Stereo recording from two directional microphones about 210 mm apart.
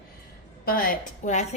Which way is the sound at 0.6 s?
45° left (ahead or behind).